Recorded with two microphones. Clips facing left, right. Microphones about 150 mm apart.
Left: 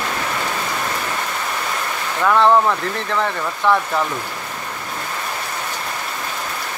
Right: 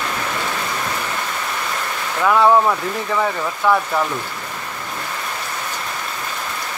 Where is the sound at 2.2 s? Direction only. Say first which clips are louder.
Even; 5° right (ahead or behind).